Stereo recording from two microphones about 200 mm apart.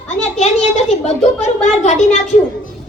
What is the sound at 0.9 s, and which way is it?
A woman's voice, 35° left (ahead or behind).